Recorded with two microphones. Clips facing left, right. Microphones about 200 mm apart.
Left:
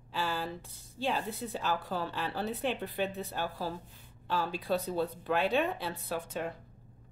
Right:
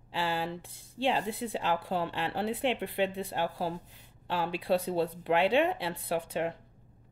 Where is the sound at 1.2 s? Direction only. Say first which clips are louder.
Right 4 dB; 90° right.